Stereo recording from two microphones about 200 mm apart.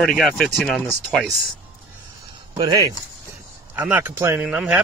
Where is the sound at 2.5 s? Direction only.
20° right (ahead or behind).